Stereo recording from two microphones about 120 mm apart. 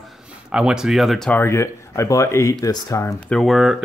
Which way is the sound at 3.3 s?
Centre (ahead or behind).